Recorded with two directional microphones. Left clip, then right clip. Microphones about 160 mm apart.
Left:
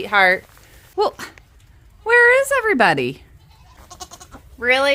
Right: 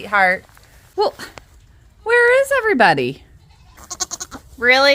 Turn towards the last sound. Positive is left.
turn(degrees=-25)  # may be behind; listen again after turning